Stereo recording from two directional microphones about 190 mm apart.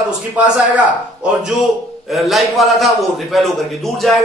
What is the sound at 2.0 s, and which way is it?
A man's voice, centre (ahead or behind).